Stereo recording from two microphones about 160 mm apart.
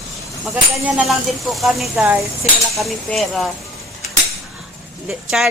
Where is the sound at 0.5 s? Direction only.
10° right (ahead or behind).